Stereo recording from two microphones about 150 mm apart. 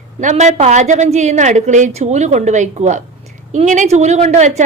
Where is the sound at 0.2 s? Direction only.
55° right (ahead or behind).